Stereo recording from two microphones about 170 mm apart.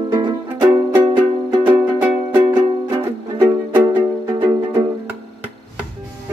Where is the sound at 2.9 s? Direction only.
25° right (ahead or behind).